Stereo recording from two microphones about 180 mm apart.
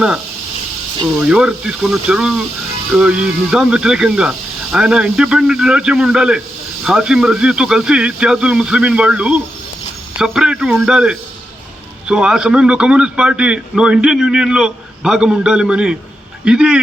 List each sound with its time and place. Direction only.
1.2 s a man's voice: 5° right (ahead or behind)